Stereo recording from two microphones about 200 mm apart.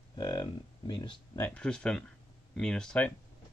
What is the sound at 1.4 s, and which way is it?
Speech, 5° left (ahead or behind).